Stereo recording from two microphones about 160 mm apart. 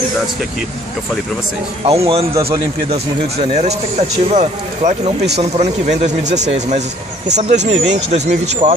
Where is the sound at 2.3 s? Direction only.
25° right (ahead or behind).